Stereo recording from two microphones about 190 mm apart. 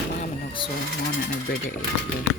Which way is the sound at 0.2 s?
25° left (ahead or behind).